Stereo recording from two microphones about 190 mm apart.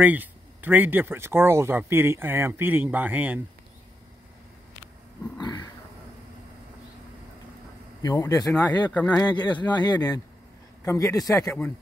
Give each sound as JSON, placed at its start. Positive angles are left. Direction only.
{"t": 0.0, "sound": "speech", "side_deg": -10}
{"t": 5.4, "sound": "speech", "side_deg": 20}
{"t": 8.0, "sound": "speech", "side_deg": 20}
{"t": 9.2, "sound": "speech", "side_deg": 25}